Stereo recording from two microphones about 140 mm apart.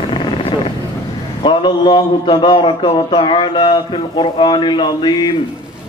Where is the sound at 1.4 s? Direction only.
35° left (ahead or behind).